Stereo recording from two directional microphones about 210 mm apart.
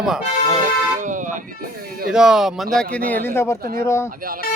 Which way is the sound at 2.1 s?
5° right (ahead or behind).